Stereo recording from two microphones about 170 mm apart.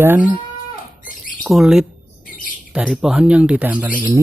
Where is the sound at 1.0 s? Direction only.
55° left (ahead or behind).